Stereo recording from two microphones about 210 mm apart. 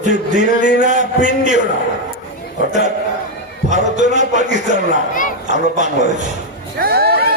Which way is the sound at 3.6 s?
35° right (ahead or behind).